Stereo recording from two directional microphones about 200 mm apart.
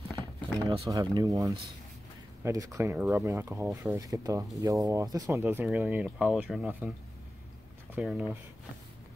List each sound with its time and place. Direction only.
0.7 s speech: 15° right (ahead or behind)
7.9 s speech: 5° right (ahead or behind)